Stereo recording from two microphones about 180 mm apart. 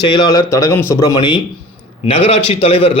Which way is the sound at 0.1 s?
20° left (ahead or behind).